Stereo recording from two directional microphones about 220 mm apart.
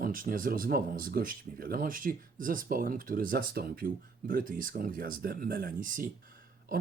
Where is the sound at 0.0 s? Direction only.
40° right (ahead or behind).